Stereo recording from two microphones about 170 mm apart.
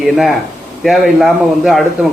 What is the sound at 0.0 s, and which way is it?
Speech, centre (ahead or behind).